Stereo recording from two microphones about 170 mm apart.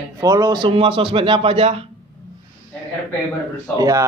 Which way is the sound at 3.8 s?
20° right (ahead or behind).